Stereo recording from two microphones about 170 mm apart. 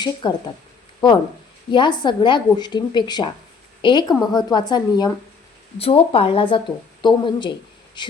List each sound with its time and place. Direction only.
0.0 s a woman's voice: 25° left (ahead or behind)